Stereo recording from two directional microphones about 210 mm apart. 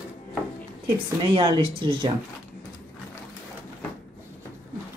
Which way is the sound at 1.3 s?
25° right (ahead or behind).